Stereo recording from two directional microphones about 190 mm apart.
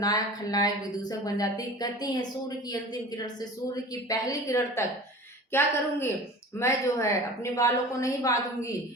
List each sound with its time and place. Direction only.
0.0 s a woman's voice: 20° left (ahead or behind)